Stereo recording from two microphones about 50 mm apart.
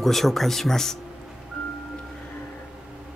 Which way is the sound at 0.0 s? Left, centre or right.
Centre.